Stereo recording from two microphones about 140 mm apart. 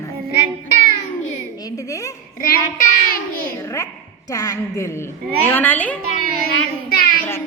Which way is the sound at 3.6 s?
25° left (ahead or behind).